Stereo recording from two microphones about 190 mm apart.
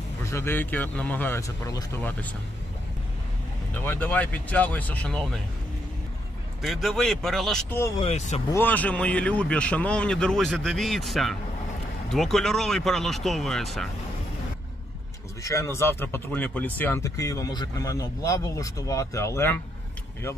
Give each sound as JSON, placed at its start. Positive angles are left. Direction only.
{"t": 0.2, "sound": "speech", "side_deg": 15}
{"t": 3.7, "sound": "speech", "side_deg": 10}
{"t": 6.6, "sound": "a man's voice", "side_deg": 0}
{"t": 8.0, "sound": "speech", "side_deg": 35}
{"t": 8.5, "sound": "a man's voice", "side_deg": 10}
{"t": 15.4, "sound": "speech", "side_deg": 15}